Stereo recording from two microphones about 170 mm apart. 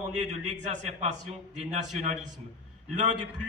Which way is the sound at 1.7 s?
45° right (ahead or behind).